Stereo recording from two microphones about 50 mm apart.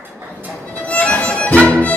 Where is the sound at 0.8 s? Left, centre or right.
Left.